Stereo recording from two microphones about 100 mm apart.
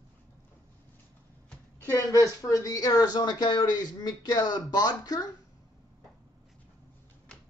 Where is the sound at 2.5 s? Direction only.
35° left (ahead or behind).